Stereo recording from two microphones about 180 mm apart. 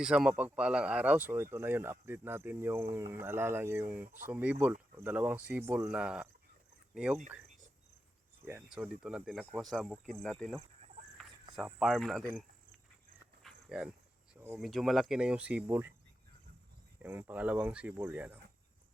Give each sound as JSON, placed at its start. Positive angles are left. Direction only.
{"t": 0.0, "sound": "speech", "side_deg": -5}
{"t": 8.4, "sound": "speech", "side_deg": -5}
{"t": 13.4, "sound": "a sound", "side_deg": -5}
{"t": 14.6, "sound": "speech", "side_deg": 0}
{"t": 17.0, "sound": "speech", "side_deg": -10}